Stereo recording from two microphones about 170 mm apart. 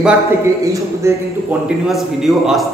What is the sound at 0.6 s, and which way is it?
Speech, 15° right (ahead or behind).